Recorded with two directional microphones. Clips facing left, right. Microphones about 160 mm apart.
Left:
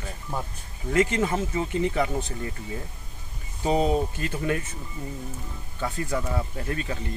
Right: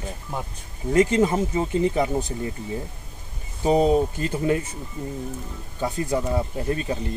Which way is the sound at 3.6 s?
25° right (ahead or behind).